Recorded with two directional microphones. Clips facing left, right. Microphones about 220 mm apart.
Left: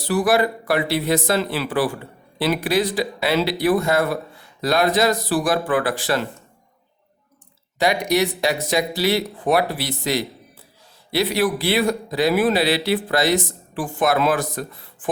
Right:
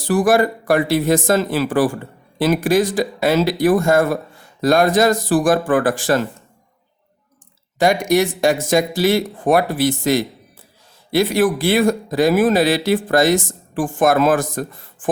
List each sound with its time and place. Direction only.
0.0 s speech: 45° right (ahead or behind)
7.8 s speech: 45° right (ahead or behind)